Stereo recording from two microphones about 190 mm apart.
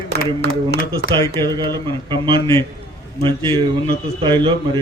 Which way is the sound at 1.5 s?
20° right (ahead or behind).